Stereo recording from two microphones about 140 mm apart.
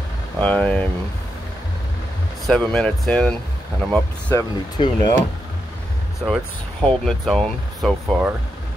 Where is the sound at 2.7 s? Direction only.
5° left (ahead or behind).